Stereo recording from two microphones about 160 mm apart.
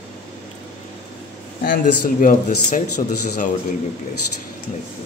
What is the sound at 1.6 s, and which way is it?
Speech, 55° left (ahead or behind).